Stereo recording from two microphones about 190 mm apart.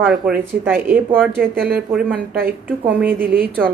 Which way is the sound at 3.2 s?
50° right (ahead or behind).